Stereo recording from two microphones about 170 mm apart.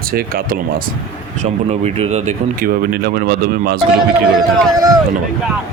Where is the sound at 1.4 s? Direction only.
40° right (ahead or behind).